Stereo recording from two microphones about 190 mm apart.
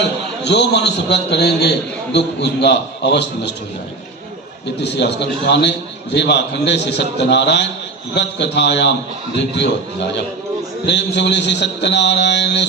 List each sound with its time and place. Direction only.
0.4 s a man's voice: 65° left (ahead or behind)
4.8 s a man's voice: 60° left (ahead or behind)
10.8 s a man's voice: 65° left (ahead or behind)